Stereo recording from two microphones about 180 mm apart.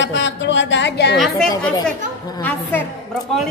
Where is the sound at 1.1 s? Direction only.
Centre (ahead or behind).